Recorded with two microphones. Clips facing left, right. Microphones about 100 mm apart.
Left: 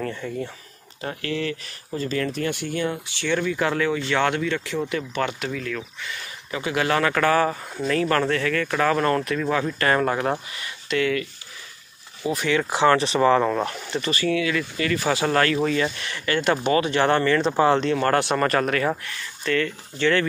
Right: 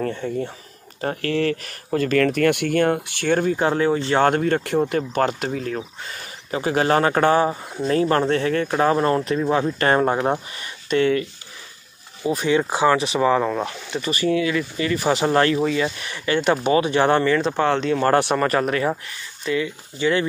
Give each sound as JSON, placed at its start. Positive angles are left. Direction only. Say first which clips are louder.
{"t": 0.2, "sound": "speech", "louder": "right 4 dB", "side_deg": -40}
{"t": 3.5, "sound": "speech", "louder": "right 4 dB", "side_deg": -30}
{"t": 12.4, "sound": "speech", "louder": "right 3 dB", "side_deg": -20}
{"t": 12.8, "sound": "speech", "louder": "left 2 dB", "side_deg": -5}
{"t": 14.2, "sound": "speech", "louder": "right 4 dB", "side_deg": -30}
{"t": 15.6, "sound": "speech", "louder": "right 1 dB", "side_deg": -10}
{"t": 17.4, "sound": "speech", "louder": "left 1 dB", "side_deg": 0}
{"t": 18.0, "sound": "speech", "louder": "right 2 dB", "side_deg": -15}